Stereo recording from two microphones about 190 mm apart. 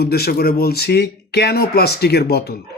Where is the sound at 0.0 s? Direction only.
55° left (ahead or behind).